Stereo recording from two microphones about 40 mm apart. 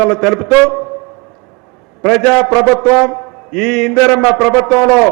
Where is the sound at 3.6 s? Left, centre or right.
Centre.